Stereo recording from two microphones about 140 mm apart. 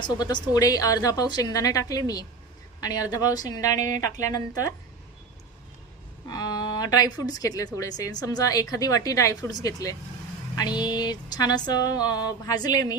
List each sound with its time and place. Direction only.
0.0 s speech: 30° left (ahead or behind)
6.2 s speech: 30° left (ahead or behind)